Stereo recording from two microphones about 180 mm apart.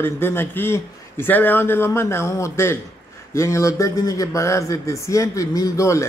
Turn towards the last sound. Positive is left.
turn(degrees=15)  # may be behind; listen again after turning